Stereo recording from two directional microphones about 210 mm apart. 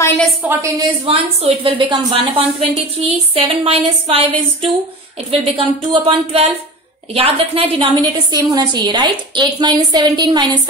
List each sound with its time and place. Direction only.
0.2 s a woman's voice: 10° right (ahead or behind)
1.0 s a woman's voice: 25° right (ahead or behind)